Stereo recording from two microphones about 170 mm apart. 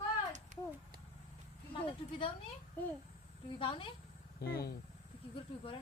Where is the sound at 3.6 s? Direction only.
30° left (ahead or behind).